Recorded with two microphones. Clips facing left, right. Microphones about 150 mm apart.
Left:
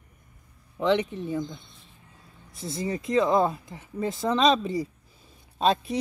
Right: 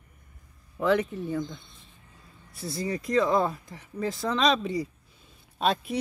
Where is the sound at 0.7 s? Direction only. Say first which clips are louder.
Left 1 dB; 5° right (ahead or behind).